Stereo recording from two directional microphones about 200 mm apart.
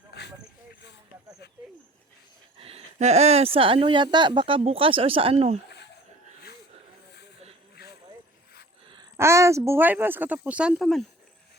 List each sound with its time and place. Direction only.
2.6 s speech: 30° right (ahead or behind)
5.6 s a sound: 60° left (ahead or behind)
9.1 s speech: 15° right (ahead or behind)